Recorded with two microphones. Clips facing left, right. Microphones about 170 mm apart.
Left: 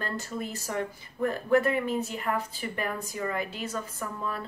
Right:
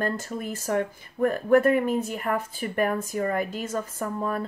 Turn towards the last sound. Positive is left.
turn(degrees=-45)  # may be behind; listen again after turning